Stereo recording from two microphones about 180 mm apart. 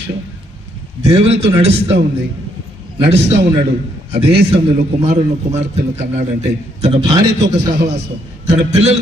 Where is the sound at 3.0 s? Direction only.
35° right (ahead or behind).